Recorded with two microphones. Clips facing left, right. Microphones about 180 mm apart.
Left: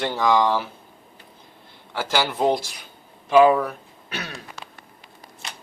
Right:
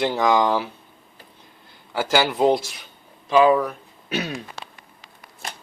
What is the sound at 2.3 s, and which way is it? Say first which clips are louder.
Speech: right 3 dB; 5° right (ahead or behind).